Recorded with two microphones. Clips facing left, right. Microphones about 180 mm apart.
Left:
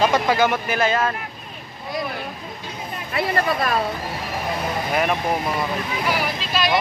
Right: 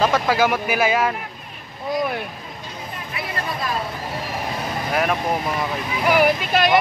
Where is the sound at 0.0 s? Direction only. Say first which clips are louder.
Even; 5° right (ahead or behind).